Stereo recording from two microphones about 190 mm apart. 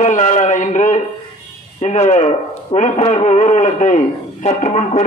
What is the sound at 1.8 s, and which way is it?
A man's voice, 35° left (ahead or behind).